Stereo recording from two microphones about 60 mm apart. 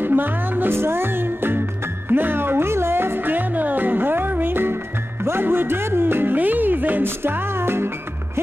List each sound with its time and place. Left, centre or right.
0.0 s music: right